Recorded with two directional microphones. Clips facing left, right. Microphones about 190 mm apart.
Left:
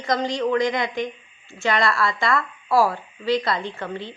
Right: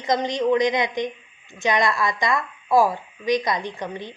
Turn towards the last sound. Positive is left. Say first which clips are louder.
# even
turn(degrees=-15)  # may be behind; listen again after turning